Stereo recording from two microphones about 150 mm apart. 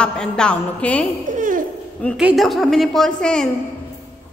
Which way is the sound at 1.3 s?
65° right (ahead or behind).